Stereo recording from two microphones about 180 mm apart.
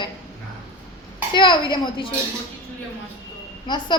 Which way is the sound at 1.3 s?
25° left (ahead or behind).